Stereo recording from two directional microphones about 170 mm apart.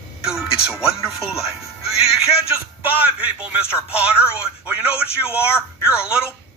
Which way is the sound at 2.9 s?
10° right (ahead or behind).